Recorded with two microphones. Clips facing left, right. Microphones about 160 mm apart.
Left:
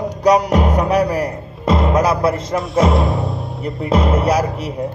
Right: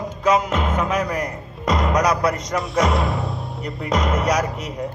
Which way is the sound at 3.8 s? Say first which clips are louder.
Left 5 dB; 30° left (ahead or behind).